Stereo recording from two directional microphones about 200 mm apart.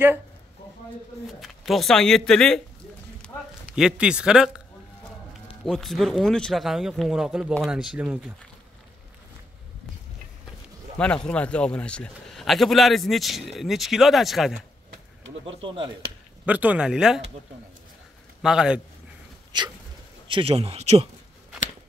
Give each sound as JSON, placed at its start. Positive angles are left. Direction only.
{"t": 1.4, "sound": "a man's voice", "side_deg": 0}
{"t": 3.2, "sound": "a sound", "side_deg": -5}
{"t": 5.7, "sound": "a man's voice", "side_deg": 0}
{"t": 11.0, "sound": "a man's voice", "side_deg": 5}
{"t": 15.4, "sound": "speech", "side_deg": -25}
{"t": 16.4, "sound": "a man's voice", "side_deg": -5}
{"t": 18.4, "sound": "a man's voice", "side_deg": -5}
{"t": 19.5, "sound": "speech", "side_deg": -20}